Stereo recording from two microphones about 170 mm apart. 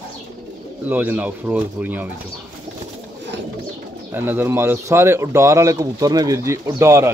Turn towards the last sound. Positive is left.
turn(degrees=-15)  # may be behind; listen again after turning